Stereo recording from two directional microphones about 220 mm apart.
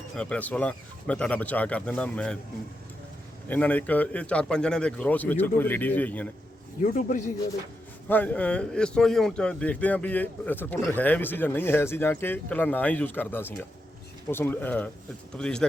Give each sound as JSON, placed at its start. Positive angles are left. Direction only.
{"t": 0.2, "sound": "speech", "side_deg": 5}
{"t": 3.5, "sound": "speech", "side_deg": 5}
{"t": 6.8, "sound": "a man's voice", "side_deg": 35}
{"t": 8.0, "sound": "speech", "side_deg": 5}